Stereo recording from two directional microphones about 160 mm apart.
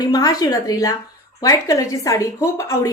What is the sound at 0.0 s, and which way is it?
A woman's voice, 25° left (ahead or behind).